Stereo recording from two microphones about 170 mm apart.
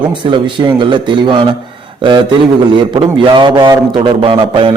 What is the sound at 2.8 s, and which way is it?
A man's voice, 30° right (ahead or behind).